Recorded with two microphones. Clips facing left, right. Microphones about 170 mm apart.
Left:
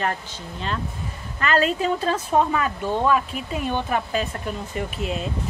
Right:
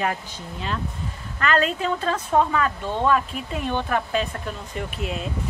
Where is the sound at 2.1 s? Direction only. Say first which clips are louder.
Even; 10° left (ahead or behind).